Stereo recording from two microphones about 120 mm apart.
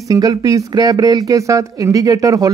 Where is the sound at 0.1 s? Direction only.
30° right (ahead or behind).